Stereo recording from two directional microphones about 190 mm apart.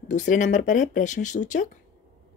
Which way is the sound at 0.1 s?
40° left (ahead or behind).